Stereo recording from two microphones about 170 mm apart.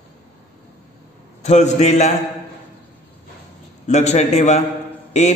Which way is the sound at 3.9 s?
40° left (ahead or behind).